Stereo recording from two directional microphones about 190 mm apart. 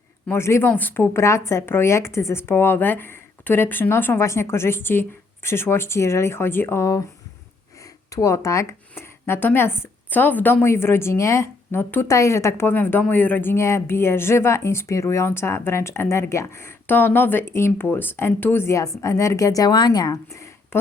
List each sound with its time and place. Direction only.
0.3 s speech: 15° left (ahead or behind)
8.1 s speech: 15° left (ahead or behind)